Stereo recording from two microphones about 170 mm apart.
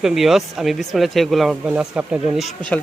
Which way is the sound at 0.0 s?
Centre (ahead or behind).